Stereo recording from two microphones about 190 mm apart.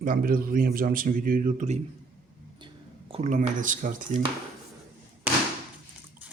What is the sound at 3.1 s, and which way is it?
Speech, 35° right (ahead or behind).